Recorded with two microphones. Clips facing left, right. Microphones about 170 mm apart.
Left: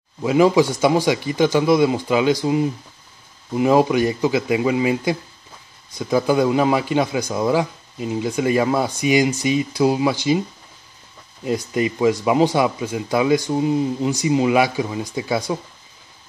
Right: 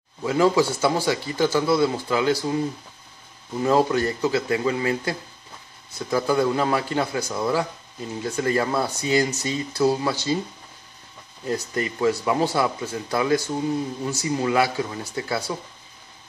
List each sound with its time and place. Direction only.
0.2 s speech: 15° left (ahead or behind)
11.4 s speech: 15° left (ahead or behind)